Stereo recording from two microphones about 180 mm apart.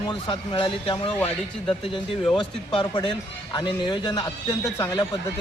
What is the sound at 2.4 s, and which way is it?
Speech, 25° left (ahead or behind).